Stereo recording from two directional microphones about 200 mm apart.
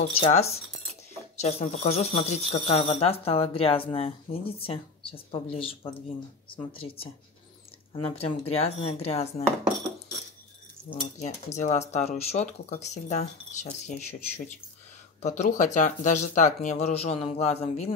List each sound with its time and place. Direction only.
0.2 s speech: 30° left (ahead or behind)
11.1 s speech: 35° left (ahead or behind)